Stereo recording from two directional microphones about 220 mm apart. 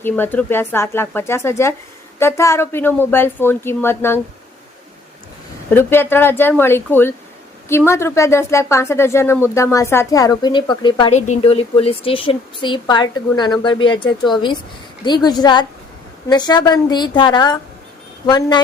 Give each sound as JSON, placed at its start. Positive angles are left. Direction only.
{"t": 0.0, "sound": "speech", "side_deg": 10}
{"t": 5.7, "sound": "a woman's voice", "side_deg": 10}